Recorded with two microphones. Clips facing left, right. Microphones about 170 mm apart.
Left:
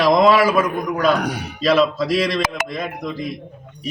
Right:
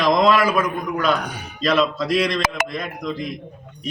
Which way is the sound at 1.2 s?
75° left (ahead or behind).